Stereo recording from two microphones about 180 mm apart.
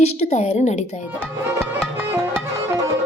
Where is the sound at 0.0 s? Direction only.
35° left (ahead or behind).